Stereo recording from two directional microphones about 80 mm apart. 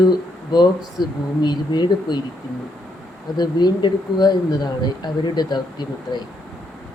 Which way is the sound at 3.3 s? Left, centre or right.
Left.